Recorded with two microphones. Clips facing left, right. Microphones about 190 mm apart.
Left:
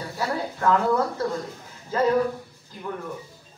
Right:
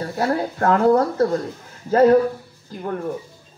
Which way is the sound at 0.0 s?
50° right (ahead or behind).